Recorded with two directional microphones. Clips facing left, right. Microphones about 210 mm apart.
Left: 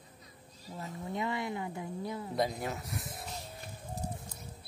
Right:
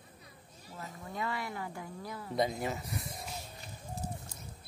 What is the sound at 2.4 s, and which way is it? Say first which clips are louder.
Speech: right 2 dB; centre (ahead or behind).